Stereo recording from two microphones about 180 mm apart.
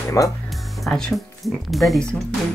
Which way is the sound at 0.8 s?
5° left (ahead or behind).